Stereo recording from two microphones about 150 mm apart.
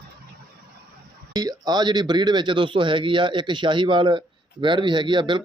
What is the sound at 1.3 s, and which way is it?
Speech, 25° right (ahead or behind).